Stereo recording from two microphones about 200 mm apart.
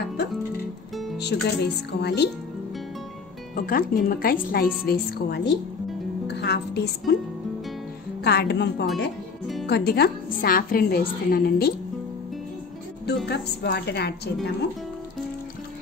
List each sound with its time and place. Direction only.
1.1 s speech: 55° left (ahead or behind)
3.5 s a woman's voice: 45° left (ahead or behind)
8.2 s a woman's voice: 55° left (ahead or behind)
13.0 s speech: 55° left (ahead or behind)